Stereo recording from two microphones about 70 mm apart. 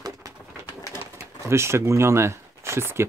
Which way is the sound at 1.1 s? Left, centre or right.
Right.